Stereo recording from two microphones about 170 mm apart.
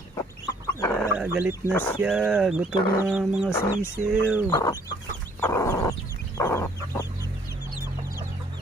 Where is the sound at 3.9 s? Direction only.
10° right (ahead or behind).